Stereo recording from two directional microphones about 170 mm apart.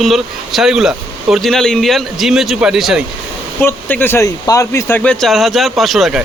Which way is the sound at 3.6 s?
10° left (ahead or behind).